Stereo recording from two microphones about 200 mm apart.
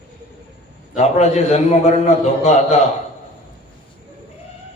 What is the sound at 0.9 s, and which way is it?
A man's voice, 35° left (ahead or behind).